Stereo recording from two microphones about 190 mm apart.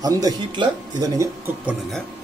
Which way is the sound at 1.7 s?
Centre (ahead or behind).